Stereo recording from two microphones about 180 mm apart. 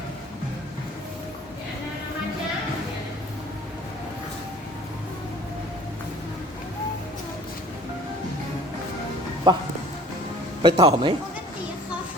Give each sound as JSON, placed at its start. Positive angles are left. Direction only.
{"t": 9.5, "sound": "a man's voice", "side_deg": -25}